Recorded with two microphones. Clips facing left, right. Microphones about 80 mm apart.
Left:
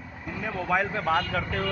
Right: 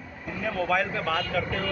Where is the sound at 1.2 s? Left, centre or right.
Left.